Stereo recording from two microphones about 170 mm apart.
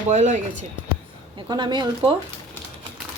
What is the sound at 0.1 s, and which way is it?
Speech, 45° right (ahead or behind).